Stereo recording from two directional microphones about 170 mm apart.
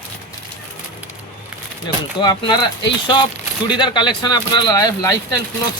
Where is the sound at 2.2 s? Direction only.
25° left (ahead or behind).